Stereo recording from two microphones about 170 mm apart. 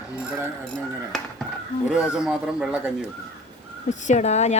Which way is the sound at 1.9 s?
5° right (ahead or behind).